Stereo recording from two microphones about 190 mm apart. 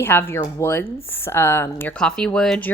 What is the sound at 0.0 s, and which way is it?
A woman's voice, 10° left (ahead or behind).